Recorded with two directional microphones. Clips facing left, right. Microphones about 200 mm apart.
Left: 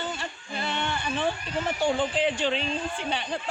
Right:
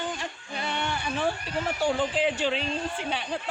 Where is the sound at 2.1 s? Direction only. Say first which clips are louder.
Even; 10° right (ahead or behind).